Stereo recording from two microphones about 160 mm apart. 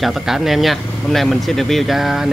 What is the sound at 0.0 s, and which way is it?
Speech, centre (ahead or behind).